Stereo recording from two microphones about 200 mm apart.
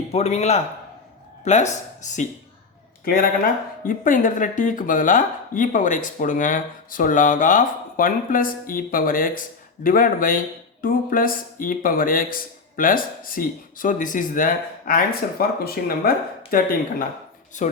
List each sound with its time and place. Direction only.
0.1 s speech: 30° left (ahead or behind)
3.0 s speech: 45° left (ahead or behind)